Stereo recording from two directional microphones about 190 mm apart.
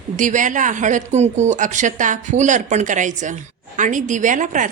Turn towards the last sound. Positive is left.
turn(degrees=-40)  # may be behind; listen again after turning